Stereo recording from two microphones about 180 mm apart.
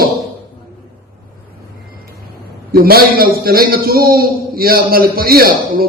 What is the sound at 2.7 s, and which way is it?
A man's voice, 55° right (ahead or behind).